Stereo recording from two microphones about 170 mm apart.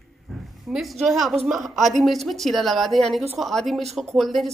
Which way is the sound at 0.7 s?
Centre (ahead or behind).